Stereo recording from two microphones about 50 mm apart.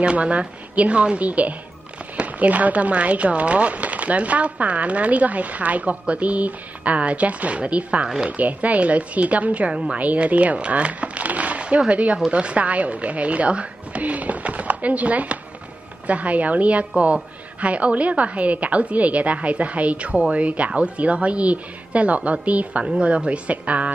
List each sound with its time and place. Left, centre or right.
0.0 s a woman's voice: right